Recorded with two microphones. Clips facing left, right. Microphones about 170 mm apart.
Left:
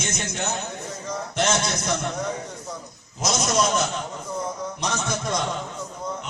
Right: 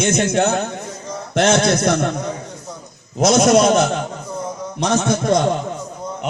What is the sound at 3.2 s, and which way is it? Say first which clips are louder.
A man's voice: right 11 dB; 60° right (ahead or behind).